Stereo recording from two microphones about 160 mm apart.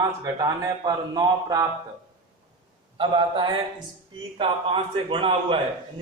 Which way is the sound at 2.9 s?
30° right (ahead or behind).